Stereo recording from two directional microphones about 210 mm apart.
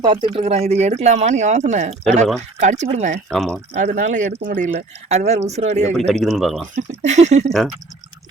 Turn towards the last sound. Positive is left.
turn(degrees=-35)  # may be behind; listen again after turning